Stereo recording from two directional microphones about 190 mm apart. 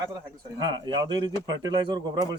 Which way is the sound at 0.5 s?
25° right (ahead or behind).